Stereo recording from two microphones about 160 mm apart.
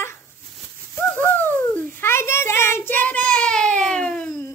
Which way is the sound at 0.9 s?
10° left (ahead or behind).